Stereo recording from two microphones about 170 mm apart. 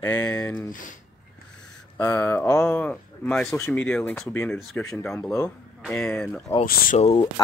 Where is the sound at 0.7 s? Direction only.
50° left (ahead or behind).